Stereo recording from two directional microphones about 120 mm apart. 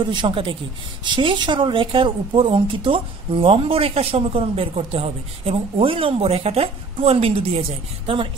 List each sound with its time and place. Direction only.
0.0 s a woman's voice: 40° right (ahead or behind)